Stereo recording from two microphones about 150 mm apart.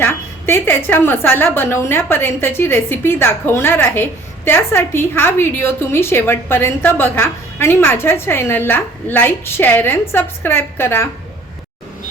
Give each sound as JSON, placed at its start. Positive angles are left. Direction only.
{"t": 0.0, "sound": "a woman's voice", "side_deg": 15}